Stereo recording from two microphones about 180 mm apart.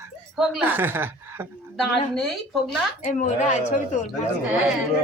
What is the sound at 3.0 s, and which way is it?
A woman's voice, 45° left (ahead or behind).